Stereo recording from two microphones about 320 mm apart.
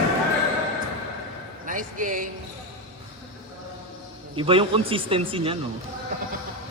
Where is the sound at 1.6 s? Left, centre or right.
Right.